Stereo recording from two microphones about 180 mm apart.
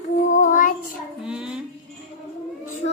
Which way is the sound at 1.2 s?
5° right (ahead or behind).